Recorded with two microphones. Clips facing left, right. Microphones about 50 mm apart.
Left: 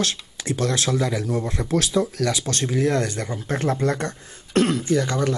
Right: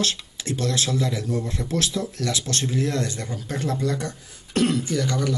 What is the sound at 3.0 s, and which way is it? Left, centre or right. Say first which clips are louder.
Speech: left 3 dB; left.